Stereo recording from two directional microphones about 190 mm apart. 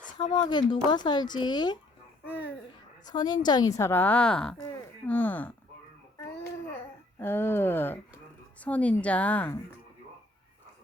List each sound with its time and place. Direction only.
0.2 s speech: 25° left (ahead or behind)
2.2 s a woman's voice: 10° left (ahead or behind)
3.1 s a woman's voice: 20° left (ahead or behind)
7.2 s a woman's voice: 10° left (ahead or behind)